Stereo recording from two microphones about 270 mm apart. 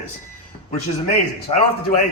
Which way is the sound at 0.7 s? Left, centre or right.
Left.